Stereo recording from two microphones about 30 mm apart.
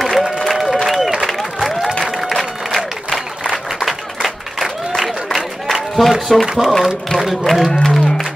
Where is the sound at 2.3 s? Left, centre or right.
Centre.